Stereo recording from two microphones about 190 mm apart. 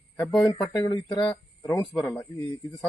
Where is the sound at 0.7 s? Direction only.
20° left (ahead or behind).